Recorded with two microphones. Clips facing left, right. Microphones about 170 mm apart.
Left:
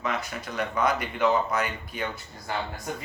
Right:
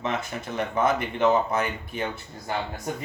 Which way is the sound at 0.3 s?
25° right (ahead or behind).